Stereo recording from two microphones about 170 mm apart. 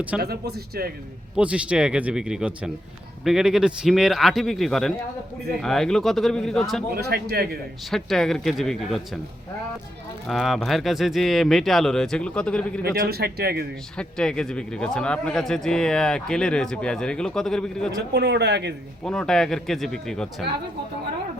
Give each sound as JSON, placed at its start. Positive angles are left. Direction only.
{"t": 0.2, "sound": "a man's voice", "side_deg": -70}
{"t": 1.4, "sound": "a man's voice", "side_deg": -5}
{"t": 6.9, "sound": "a man's voice", "side_deg": -65}
{"t": 7.9, "sound": "a man's voice", "side_deg": 0}
{"t": 10.2, "sound": "a man's voice", "side_deg": 0}
{"t": 12.8, "sound": "a man's voice", "side_deg": -65}
{"t": 13.9, "sound": "a man's voice", "side_deg": 5}
{"t": 18.1, "sound": "speech", "side_deg": -80}
{"t": 19.0, "sound": "a man's voice", "side_deg": 5}